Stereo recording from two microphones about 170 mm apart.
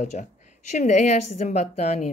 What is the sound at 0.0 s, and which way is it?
A woman's voice, 45° left (ahead or behind).